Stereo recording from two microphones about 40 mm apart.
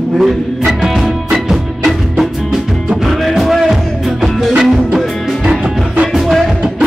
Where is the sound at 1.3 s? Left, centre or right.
Centre.